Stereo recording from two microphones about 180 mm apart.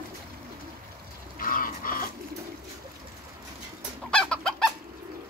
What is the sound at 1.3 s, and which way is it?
Livestock, 50° left (ahead or behind).